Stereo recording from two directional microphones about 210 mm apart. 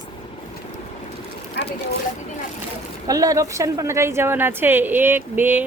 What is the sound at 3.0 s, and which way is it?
A woman's voice, 15° right (ahead or behind).